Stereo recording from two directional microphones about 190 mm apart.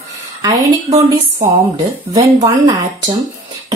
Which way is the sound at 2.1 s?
20° right (ahead or behind).